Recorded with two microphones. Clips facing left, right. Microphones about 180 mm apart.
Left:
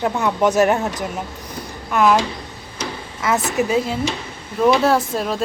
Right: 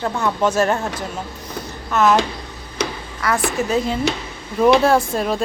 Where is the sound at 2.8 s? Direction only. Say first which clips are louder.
Right 4 dB; 70° right (ahead or behind).